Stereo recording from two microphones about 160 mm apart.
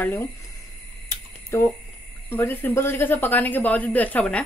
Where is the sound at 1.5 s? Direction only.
15° left (ahead or behind).